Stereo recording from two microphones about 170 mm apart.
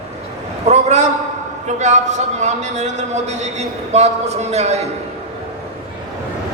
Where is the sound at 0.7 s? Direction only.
40° right (ahead or behind).